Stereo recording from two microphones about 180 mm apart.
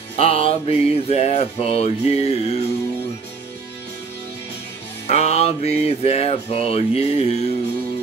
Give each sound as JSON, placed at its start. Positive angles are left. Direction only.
{"t": 0.1, "sound": "music", "side_deg": 35}
{"t": 5.0, "sound": "music", "side_deg": 35}